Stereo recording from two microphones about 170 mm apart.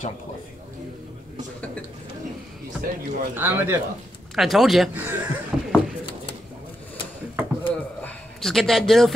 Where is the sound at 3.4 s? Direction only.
15° right (ahead or behind).